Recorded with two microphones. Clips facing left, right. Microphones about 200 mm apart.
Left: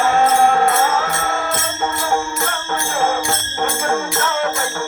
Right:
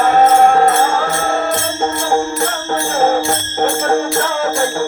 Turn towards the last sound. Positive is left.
turn(degrees=-30)  # may be behind; listen again after turning